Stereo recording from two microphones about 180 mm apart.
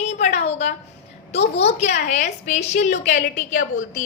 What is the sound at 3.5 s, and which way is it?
Speech, 90° left.